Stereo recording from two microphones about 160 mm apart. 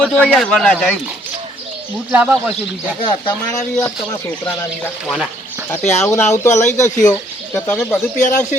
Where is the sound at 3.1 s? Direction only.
30° left (ahead or behind).